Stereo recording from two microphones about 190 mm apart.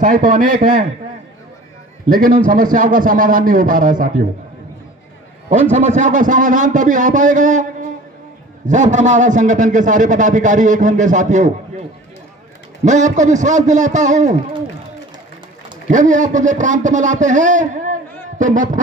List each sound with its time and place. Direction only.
0.0 s a man's voice: 45° right (ahead or behind)
2.0 s a man's voice: 50° right (ahead or behind)
5.5 s a man's voice: 40° right (ahead or behind)
12.8 s a man's voice: 40° right (ahead or behind)
15.9 s a man's voice: 40° right (ahead or behind)